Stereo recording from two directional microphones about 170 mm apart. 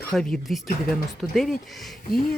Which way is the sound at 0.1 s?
5° left (ahead or behind).